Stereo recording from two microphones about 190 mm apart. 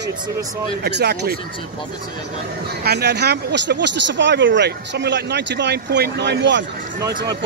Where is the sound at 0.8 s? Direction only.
60° right (ahead or behind).